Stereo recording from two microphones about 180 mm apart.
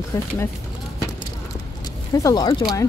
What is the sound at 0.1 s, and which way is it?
Speech, 20° left (ahead or behind).